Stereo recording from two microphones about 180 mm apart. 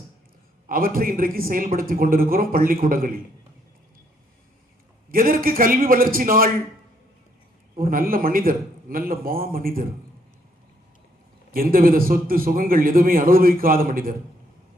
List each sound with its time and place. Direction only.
0.7 s a man's voice: 55° right (ahead or behind)
5.1 s a man's voice: 50° right (ahead or behind)
7.8 s a man's voice: 50° right (ahead or behind)
11.5 s a man's voice: 55° right (ahead or behind)